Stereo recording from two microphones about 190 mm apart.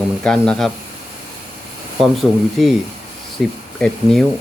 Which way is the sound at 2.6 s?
Centre (ahead or behind).